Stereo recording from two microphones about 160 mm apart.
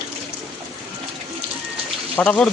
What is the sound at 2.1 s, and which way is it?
Speech, 10° left (ahead or behind).